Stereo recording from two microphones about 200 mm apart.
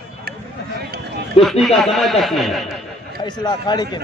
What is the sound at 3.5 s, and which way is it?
Speech, 20° left (ahead or behind).